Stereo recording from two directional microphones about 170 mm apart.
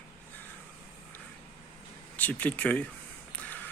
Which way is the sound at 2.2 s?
10° left (ahead or behind).